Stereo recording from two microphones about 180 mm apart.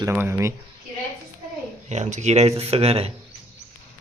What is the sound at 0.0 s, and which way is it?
Speech, 15° right (ahead or behind).